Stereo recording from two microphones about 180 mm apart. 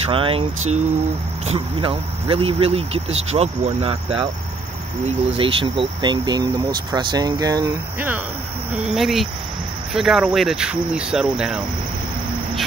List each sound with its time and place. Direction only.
0.1 s speech: 30° right (ahead or behind)
5.4 s speech: 30° right (ahead or behind); by 8.2 s 15° right (ahead or behind)
8.8 s speech: centre (ahead or behind)